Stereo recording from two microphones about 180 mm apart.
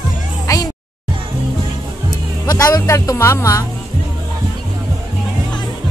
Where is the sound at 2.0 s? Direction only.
20° left (ahead or behind).